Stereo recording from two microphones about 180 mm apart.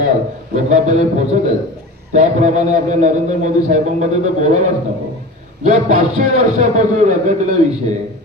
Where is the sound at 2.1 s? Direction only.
40° right (ahead or behind).